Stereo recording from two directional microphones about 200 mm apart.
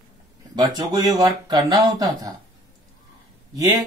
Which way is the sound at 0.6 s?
20° right (ahead or behind).